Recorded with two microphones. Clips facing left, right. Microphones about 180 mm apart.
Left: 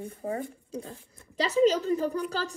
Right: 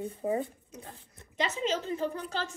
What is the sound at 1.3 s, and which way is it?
A woman's voice, 35° left (ahead or behind).